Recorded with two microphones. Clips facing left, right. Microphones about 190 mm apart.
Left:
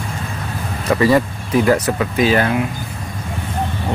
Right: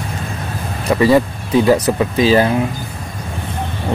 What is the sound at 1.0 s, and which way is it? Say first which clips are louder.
Speech: right 3 dB; 25° right (ahead or behind).